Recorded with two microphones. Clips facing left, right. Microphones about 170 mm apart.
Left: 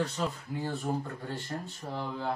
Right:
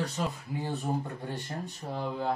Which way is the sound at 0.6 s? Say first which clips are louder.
Even; 20° right (ahead or behind).